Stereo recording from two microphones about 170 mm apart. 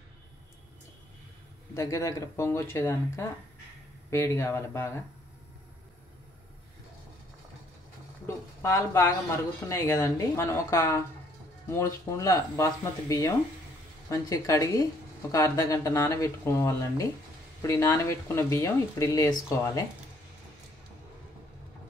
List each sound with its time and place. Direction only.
1.7 s speech: 20° left (ahead or behind)
8.6 s speech: 20° left (ahead or behind)